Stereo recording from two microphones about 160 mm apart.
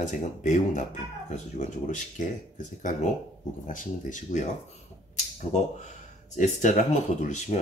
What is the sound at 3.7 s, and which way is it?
Speech, 55° left (ahead or behind).